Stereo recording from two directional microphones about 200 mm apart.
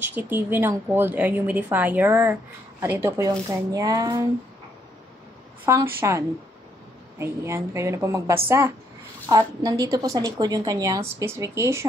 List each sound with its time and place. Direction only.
0.1 s a woman's voice: 10° right (ahead or behind)
5.9 s a woman's voice: 15° right (ahead or behind)